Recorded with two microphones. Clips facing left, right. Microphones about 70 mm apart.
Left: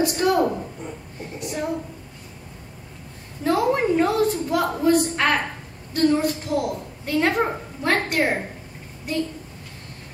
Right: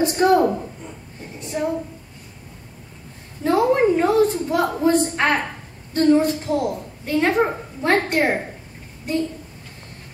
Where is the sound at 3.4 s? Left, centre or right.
Right.